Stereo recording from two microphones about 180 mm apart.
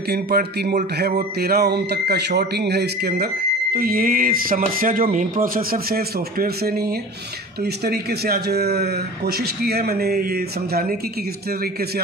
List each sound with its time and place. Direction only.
0.1 s speech: 60° right (ahead or behind)